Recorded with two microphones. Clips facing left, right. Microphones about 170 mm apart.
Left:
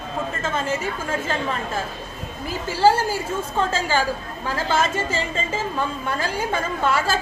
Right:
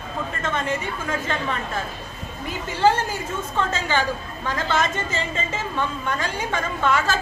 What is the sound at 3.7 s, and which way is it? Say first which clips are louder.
Speech: left 1 dB; 10° left (ahead or behind).